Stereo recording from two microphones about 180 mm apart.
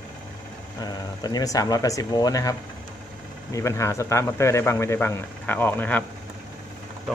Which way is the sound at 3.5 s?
15° left (ahead or behind).